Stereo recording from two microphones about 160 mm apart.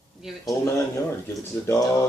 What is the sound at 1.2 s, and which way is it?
Speech, 15° left (ahead or behind).